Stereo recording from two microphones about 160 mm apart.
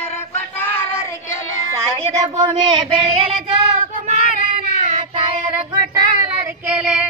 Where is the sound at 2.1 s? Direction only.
20° right (ahead or behind).